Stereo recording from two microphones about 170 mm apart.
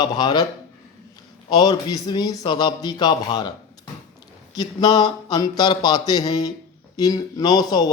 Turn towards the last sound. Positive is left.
turn(degrees=25)  # may be behind; listen again after turning